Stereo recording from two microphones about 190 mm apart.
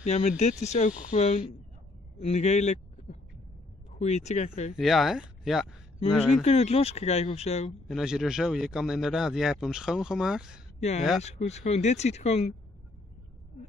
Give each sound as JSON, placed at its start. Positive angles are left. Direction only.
{"t": 0.0, "sound": "a man's voice", "side_deg": 35}
{"t": 4.7, "sound": "speech", "side_deg": 0}
{"t": 6.4, "sound": "speech", "side_deg": 35}
{"t": 7.9, "sound": "speech", "side_deg": -5}
{"t": 10.8, "sound": "speech", "side_deg": 35}